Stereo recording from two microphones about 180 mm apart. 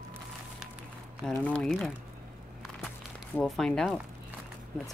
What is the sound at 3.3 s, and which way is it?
Speech, 5° left (ahead or behind).